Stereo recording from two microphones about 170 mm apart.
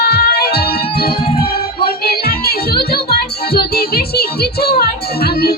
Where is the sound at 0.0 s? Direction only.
70° left (ahead or behind).